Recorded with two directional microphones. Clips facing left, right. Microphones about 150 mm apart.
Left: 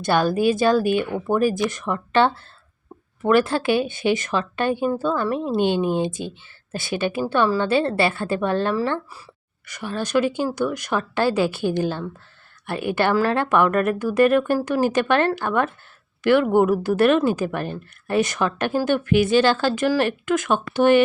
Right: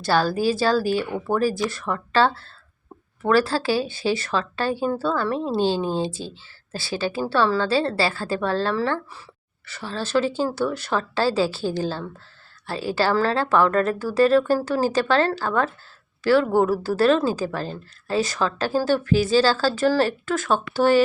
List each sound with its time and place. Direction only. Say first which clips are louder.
0.0 s a woman's voice: left 2 dB; 20° left (ahead or behind)